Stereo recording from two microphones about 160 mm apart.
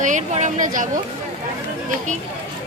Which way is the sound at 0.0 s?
50° right (ahead or behind).